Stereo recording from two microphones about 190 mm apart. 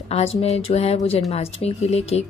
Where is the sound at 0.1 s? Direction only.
30° left (ahead or behind).